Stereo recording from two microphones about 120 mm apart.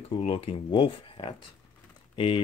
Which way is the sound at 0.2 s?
60° left (ahead or behind).